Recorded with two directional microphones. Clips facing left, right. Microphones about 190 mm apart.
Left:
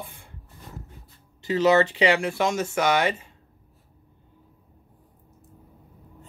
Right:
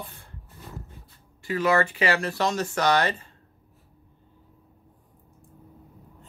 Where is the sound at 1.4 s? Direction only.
20° left (ahead or behind).